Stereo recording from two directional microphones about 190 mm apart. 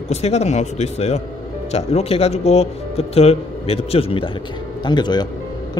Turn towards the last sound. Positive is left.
turn(degrees=20)  # may be behind; listen again after turning